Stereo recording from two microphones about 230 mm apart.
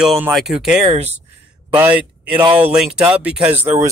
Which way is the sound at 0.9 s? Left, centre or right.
Right.